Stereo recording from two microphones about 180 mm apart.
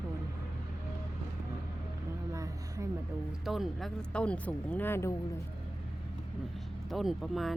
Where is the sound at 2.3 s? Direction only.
15° right (ahead or behind).